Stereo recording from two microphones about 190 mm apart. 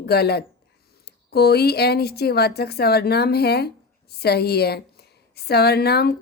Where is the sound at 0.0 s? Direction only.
55° left (ahead or behind).